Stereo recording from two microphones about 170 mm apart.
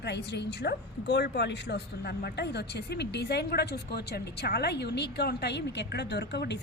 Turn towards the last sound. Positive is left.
turn(degrees=85)